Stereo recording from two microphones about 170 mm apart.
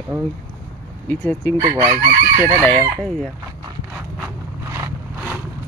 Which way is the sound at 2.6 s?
10° left (ahead or behind).